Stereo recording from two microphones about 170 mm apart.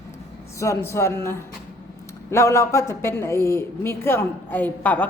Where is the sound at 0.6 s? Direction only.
15° left (ahead or behind).